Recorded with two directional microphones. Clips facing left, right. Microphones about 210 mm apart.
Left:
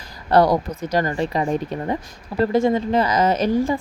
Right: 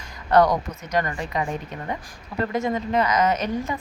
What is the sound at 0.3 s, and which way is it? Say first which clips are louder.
Speech: left 2 dB; 30° left (ahead or behind).